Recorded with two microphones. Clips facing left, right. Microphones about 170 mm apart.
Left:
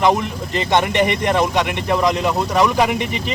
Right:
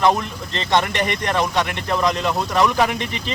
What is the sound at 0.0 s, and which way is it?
Speech, 15° left (ahead or behind).